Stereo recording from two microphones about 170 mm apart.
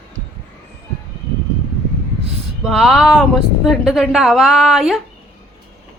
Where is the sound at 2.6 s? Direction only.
Centre (ahead or behind).